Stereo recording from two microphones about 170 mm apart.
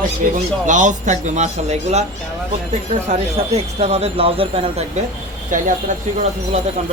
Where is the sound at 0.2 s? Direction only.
55° right (ahead or behind).